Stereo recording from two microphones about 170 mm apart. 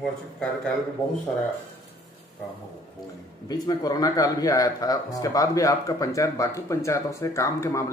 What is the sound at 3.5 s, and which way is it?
A man's voice, 20° left (ahead or behind).